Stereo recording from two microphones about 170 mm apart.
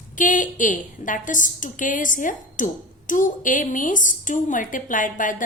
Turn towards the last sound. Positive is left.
turn(degrees=50)  # may be behind; listen again after turning